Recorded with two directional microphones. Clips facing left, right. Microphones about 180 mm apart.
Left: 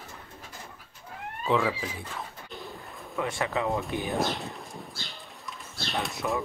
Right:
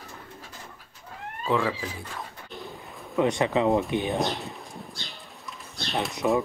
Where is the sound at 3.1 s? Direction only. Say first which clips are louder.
Right 7 dB; 20° right (ahead or behind).